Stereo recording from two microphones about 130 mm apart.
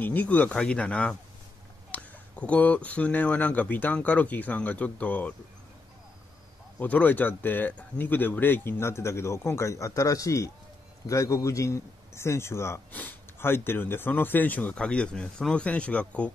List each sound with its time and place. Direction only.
0.0 s a man's voice: 15° left (ahead or behind)
6.8 s a man's voice: 10° left (ahead or behind)